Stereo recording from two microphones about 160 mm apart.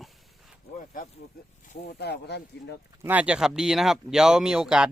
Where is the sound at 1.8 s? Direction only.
90° left.